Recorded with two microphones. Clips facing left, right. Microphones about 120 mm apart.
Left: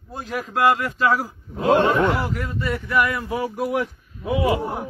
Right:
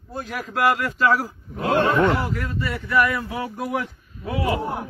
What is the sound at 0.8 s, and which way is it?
A man's voice, 20° left (ahead or behind).